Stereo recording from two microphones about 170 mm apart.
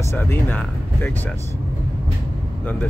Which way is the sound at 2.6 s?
10° left (ahead or behind).